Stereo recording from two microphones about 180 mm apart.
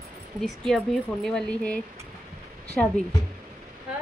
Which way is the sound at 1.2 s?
5° left (ahead or behind).